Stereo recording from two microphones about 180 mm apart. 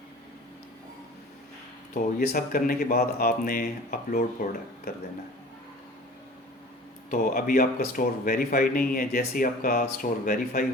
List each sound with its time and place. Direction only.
2.1 s speech: 55° left (ahead or behind)
7.1 s speech: 55° left (ahead or behind)